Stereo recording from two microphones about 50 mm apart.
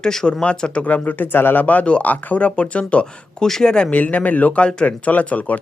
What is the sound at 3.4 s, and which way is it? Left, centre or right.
Speech, centre.